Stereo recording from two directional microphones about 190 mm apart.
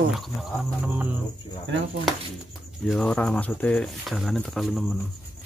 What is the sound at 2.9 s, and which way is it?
Speech, 5° left (ahead or behind).